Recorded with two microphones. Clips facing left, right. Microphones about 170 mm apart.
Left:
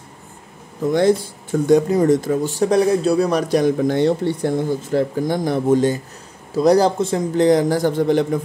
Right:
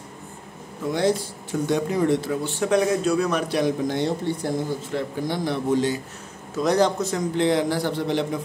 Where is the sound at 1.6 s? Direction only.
40° left (ahead or behind).